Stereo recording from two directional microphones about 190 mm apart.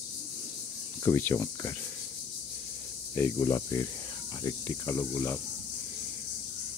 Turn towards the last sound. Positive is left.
turn(degrees=15)  # may be behind; listen again after turning